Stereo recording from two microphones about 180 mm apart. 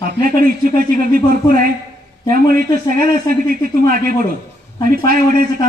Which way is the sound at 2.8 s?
50° right (ahead or behind).